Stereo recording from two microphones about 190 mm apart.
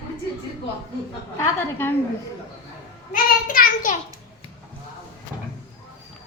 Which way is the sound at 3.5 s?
45° left (ahead or behind).